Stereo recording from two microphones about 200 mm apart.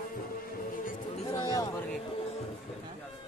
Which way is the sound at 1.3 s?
20° left (ahead or behind).